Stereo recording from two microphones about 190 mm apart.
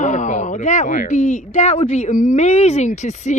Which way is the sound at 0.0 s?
40° left (ahead or behind).